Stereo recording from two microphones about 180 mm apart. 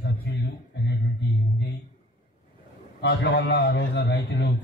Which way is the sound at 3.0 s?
70° left (ahead or behind).